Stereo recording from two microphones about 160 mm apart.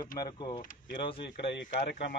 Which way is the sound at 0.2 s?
30° left (ahead or behind).